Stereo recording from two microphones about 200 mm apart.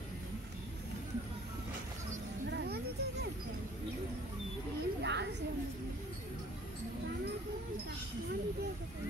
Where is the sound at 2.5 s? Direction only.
55° right (ahead or behind).